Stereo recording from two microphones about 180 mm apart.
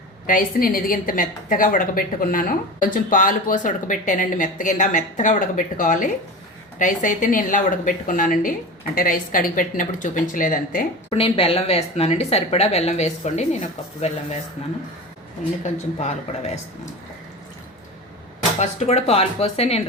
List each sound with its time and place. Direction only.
0.3 s a woman's voice: 55° left (ahead or behind)
11.1 s speech: 30° left (ahead or behind)
15.6 s speech: 40° left (ahead or behind)
18.6 s speech: 35° left (ahead or behind)